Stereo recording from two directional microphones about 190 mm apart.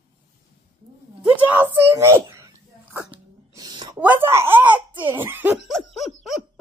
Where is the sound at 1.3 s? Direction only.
10° right (ahead or behind).